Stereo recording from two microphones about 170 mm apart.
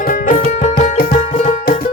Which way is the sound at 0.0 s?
50° left (ahead or behind).